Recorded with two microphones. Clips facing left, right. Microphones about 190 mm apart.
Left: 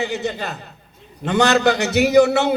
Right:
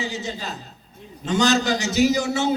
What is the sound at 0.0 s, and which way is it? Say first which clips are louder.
A man's voice: left 6 dB; 60° left (ahead or behind).